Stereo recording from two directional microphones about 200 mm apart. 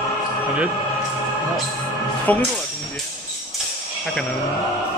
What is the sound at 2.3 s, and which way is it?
Speech, 10° left (ahead or behind).